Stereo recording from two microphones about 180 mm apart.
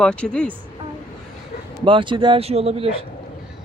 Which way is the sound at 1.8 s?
25° right (ahead or behind).